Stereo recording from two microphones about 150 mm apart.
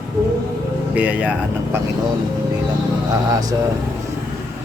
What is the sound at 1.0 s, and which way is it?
Speech, 10° right (ahead or behind).